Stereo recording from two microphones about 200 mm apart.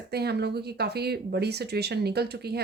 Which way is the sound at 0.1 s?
55° right (ahead or behind).